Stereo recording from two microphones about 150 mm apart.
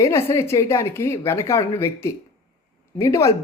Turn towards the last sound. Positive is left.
turn(degrees=20)  # may be behind; listen again after turning